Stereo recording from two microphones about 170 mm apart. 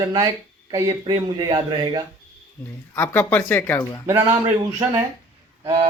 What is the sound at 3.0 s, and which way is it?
Speech, 10° left (ahead or behind).